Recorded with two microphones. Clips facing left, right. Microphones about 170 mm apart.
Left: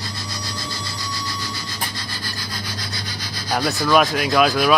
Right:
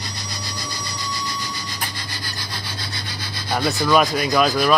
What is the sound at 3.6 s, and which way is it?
Rub, centre (ahead or behind).